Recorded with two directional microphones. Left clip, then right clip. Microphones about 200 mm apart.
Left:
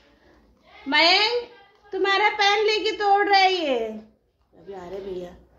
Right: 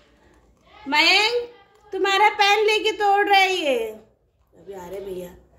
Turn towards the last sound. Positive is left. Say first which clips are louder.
# right 1 dB
turn(degrees=10)  # may be behind; listen again after turning